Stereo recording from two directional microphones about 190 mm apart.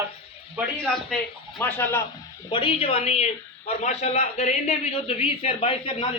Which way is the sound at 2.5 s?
25° left (ahead or behind).